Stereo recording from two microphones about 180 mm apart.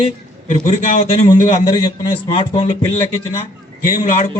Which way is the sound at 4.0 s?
45° left (ahead or behind).